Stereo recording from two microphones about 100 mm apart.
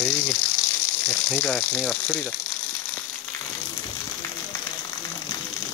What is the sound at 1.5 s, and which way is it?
Speech, 10° left (ahead or behind).